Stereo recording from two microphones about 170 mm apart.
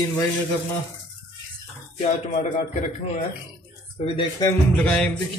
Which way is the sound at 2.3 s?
50° left (ahead or behind).